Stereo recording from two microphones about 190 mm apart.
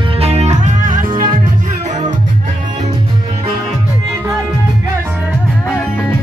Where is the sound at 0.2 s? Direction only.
35° right (ahead or behind).